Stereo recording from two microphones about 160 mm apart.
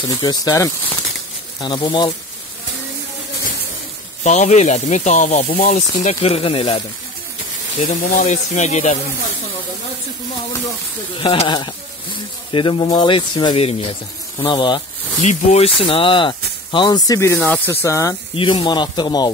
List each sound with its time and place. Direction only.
0.1 s speech: 25° left (ahead or behind)
4.2 s speech: 45° left (ahead or behind)
6.0 s speech: 40° left (ahead or behind)
7.9 s speech: 55° left (ahead or behind)
11.1 s speech: 30° left (ahead or behind)
15.2 s speech: 40° left (ahead or behind); by 18.1 s 20° left (ahead or behind)
18.3 s speech: 30° left (ahead or behind)